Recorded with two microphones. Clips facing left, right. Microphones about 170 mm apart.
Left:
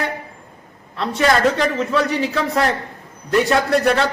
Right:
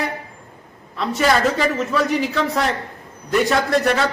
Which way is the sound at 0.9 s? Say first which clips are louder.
Left 1 dB; centre (ahead or behind).